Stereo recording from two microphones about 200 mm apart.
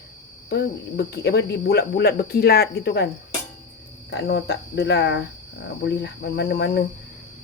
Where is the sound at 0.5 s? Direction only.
55° left (ahead or behind).